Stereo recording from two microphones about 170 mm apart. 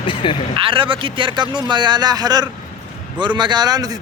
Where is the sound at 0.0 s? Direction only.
30° left (ahead or behind).